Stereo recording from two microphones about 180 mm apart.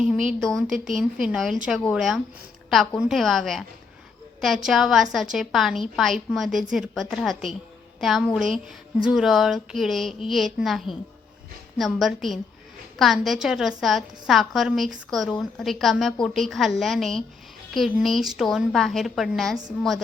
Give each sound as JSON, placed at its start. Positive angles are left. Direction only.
{"t": 0.0, "sound": "a woman's voice", "side_deg": -5}